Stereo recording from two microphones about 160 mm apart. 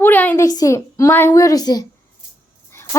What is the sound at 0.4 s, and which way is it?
A woman's voice, 20° left (ahead or behind).